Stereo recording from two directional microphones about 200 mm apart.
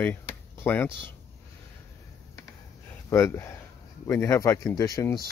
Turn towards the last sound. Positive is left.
turn(degrees=20)  # may be behind; listen again after turning